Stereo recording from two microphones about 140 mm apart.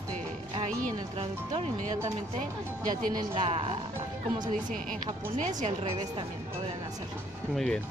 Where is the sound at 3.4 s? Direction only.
45° right (ahead or behind).